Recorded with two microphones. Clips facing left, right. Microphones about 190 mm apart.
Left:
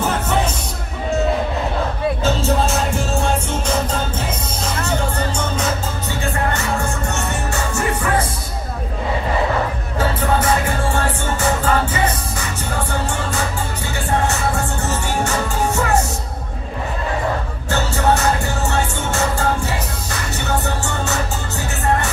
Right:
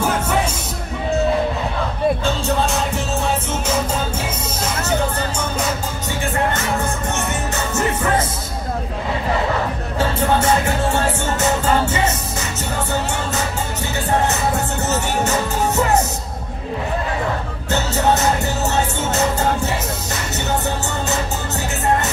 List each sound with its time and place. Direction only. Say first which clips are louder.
2.2 s music: left 2 dB; centre (ahead or behind)
7.7 s music: right 1 dB; 20° right (ahead or behind)
9.9 s music: right 1 dB; 25° right (ahead or behind)
14.2 s music: right 1 dB; 20° right (ahead or behind)
17.6 s music: even; 20° right (ahead or behind)